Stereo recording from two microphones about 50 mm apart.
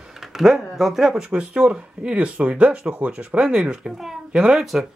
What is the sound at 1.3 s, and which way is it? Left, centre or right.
A woman's voice, right.